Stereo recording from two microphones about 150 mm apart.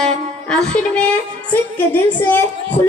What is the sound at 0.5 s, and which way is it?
A woman's voice, 5° left (ahead or behind).